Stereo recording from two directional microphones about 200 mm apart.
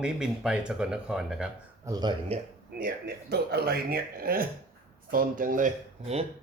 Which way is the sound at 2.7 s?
50° right (ahead or behind).